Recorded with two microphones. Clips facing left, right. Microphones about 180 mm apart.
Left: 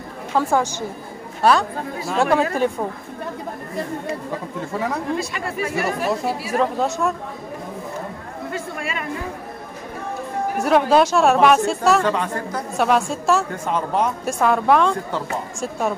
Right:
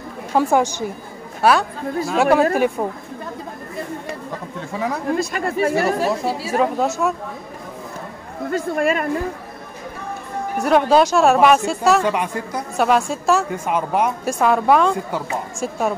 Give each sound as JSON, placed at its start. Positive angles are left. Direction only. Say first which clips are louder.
{"t": 0.3, "sound": "a woman's voice", "louder": "right 3 dB", "side_deg": -15}
{"t": 5.1, "sound": "speech", "louder": "right 4 dB", "side_deg": -45}
{"t": 6.6, "sound": "a woman's voice", "louder": "right 2 dB", "side_deg": -5}
{"t": 8.5, "sound": "speech", "louder": "right 10 dB", "side_deg": -45}
{"t": 10.6, "sound": "a woman's voice", "louder": "right 1 dB", "side_deg": 0}
{"t": 12.0, "sound": "a woman's voice", "louder": "even", "side_deg": -15}
{"t": 12.7, "sound": "a woman's voice", "louder": "right 1 dB", "side_deg": 0}